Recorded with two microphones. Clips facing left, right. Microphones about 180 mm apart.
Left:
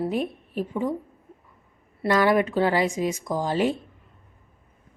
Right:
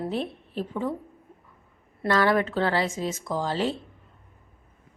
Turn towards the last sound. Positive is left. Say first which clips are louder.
# left 3 dB
turn(degrees=15)  # may be behind; listen again after turning